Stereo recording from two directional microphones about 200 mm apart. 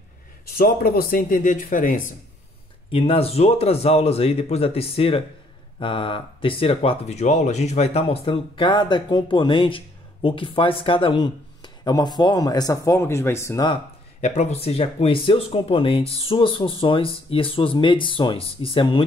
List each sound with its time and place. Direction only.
0.6 s speech: 50° left (ahead or behind)
2.9 s speech: 30° left (ahead or behind)
14.2 s speech: 35° left (ahead or behind)